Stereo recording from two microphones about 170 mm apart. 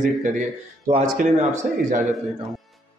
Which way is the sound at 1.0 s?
55° right (ahead or behind).